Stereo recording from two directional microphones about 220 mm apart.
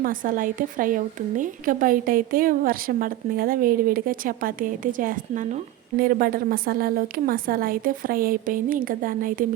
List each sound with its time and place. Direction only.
0.0 s a woman's voice: 40° right (ahead or behind)